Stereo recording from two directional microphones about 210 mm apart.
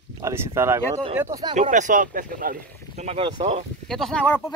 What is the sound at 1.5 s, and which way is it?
Speech, 35° right (ahead or behind).